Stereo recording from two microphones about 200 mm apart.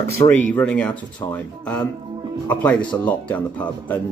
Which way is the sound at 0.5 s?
5° left (ahead or behind).